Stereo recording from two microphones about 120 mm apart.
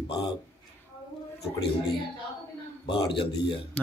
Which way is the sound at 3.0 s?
45° left (ahead or behind).